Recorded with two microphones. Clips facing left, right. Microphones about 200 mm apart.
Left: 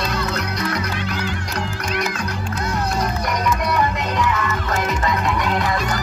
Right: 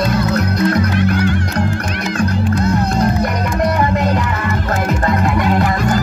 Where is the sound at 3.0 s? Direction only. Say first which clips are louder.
Right 6 dB; 55° right (ahead or behind).